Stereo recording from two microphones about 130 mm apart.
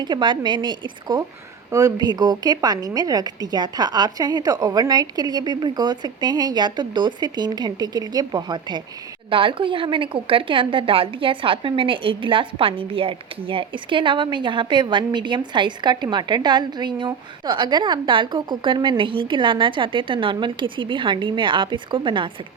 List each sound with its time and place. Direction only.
0.0 s a woman's voice: 35° right (ahead or behind)